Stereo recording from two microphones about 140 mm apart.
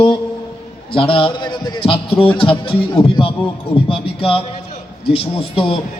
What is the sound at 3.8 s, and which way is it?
A man's voice, 40° left (ahead or behind).